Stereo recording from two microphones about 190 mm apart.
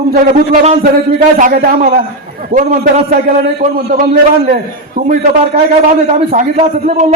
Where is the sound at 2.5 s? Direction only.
30° right (ahead or behind).